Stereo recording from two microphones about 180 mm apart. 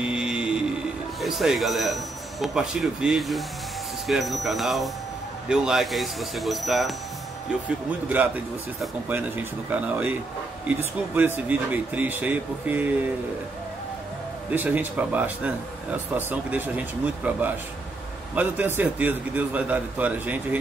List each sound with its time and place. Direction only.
0.0 s vehicle: 5° right (ahead or behind)
1.2 s speech: centre (ahead or behind)
9.1 s a man's voice: 10° right (ahead or behind)
14.5 s a man's voice: 10° right (ahead or behind)